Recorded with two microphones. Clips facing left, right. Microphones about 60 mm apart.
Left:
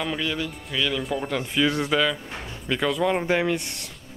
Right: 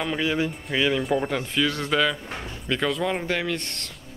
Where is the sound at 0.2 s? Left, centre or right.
Centre.